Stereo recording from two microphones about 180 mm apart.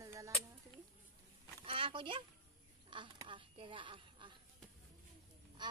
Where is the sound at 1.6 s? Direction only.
30° right (ahead or behind).